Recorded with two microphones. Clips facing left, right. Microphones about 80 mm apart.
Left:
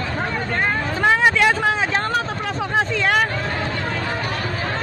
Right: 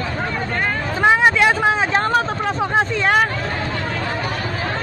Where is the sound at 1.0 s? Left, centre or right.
Centre.